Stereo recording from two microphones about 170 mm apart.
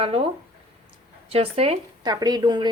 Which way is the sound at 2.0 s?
25° right (ahead or behind).